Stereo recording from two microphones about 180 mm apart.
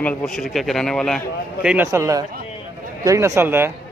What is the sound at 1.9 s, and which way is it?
Speech, 15° right (ahead or behind).